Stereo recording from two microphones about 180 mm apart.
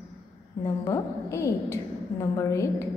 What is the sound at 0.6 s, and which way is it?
A woman's voice, 20° left (ahead or behind).